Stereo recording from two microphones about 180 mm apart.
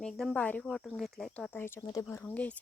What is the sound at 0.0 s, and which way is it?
Speech, 5° left (ahead or behind).